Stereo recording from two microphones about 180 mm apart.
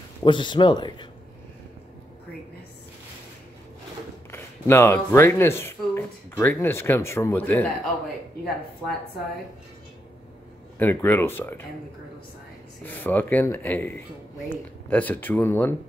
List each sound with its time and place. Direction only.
0.2 s speech: 25° left (ahead or behind)
4.3 s speech: 10° left (ahead or behind)
10.8 s speech: 10° left (ahead or behind)
12.8 s speech: 10° left (ahead or behind)